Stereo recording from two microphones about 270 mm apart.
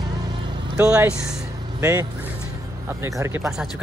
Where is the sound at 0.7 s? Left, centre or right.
Centre.